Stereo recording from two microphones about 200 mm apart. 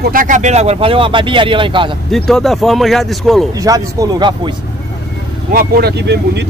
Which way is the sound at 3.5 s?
15° right (ahead or behind).